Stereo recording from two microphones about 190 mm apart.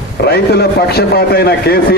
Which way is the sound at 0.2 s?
55° left (ahead or behind).